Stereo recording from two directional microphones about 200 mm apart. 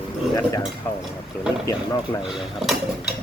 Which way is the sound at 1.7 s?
15° left (ahead or behind).